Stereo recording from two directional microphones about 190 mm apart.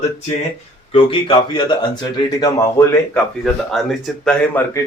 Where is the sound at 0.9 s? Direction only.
25° left (ahead or behind).